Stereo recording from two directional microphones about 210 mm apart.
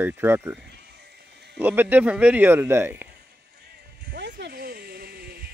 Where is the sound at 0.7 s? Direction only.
50° right (ahead or behind).